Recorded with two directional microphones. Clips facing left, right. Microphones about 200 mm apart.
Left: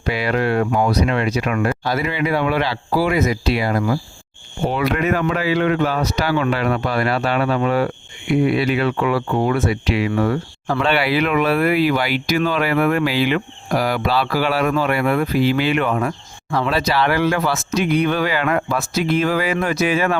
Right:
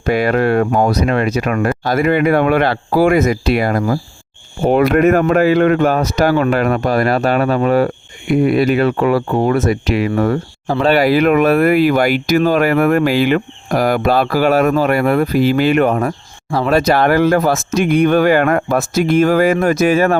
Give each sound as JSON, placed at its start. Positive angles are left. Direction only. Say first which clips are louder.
{"t": 0.0, "sound": "speech", "louder": "right 6 dB", "side_deg": -50}
{"t": 16.6, "sound": "speech", "louder": "right 7 dB", "side_deg": -50}